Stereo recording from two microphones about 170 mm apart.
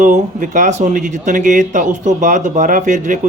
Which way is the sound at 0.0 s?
50° right (ahead or behind).